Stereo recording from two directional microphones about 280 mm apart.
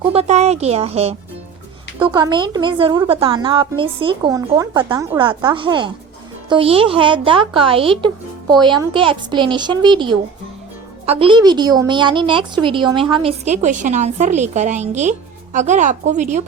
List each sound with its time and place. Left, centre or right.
0.1 s a woman's voice: right